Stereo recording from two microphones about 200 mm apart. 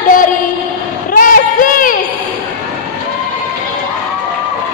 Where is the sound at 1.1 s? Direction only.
45° left (ahead or behind).